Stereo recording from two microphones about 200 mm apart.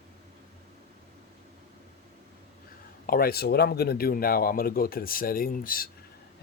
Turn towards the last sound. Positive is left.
turn(degrees=45)  # may be behind; listen again after turning